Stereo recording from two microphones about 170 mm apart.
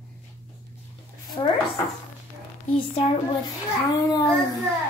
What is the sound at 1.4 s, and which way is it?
Speech, 30° left (ahead or behind).